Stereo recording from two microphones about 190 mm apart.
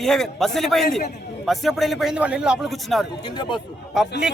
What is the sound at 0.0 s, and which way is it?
Speech, centre (ahead or behind).